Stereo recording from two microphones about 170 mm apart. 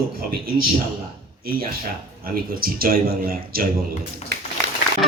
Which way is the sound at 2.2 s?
60° right (ahead or behind).